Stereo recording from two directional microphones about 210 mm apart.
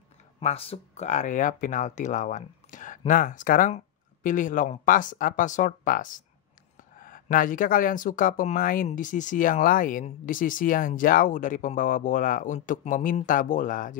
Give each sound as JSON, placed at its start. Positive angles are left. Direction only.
{"t": 0.4, "sound": "speech", "side_deg": 30}